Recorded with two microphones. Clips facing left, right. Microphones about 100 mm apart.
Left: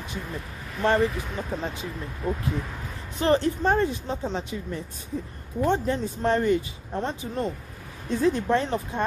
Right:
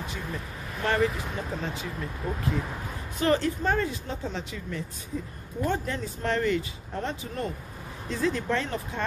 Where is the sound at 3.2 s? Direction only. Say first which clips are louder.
Left 3 dB; 25° left (ahead or behind).